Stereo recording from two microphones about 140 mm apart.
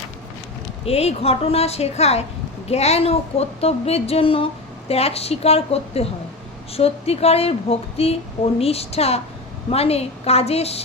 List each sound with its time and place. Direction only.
0.9 s speech: 45° left (ahead or behind)